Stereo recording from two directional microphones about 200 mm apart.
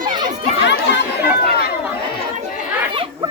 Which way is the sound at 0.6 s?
60° left (ahead or behind).